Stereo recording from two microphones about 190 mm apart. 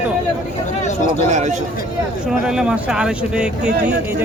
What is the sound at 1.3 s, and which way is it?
Speech, 40° right (ahead or behind).